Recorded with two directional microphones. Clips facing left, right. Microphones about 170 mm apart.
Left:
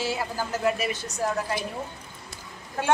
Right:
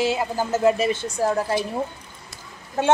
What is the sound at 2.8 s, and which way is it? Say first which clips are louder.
Speech: right 5 dB; 25° right (ahead or behind).